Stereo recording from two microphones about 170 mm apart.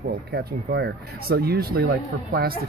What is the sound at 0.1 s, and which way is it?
Speech, 70° right (ahead or behind).